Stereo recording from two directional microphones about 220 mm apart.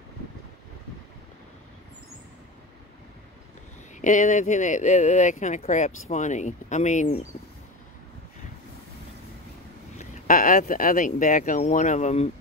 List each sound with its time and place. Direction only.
4.0 s speech: 35° left (ahead or behind)
9.9 s speech: 35° left (ahead or behind)